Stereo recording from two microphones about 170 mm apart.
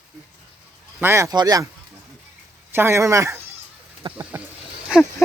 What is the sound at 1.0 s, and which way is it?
Speech, 15° right (ahead or behind).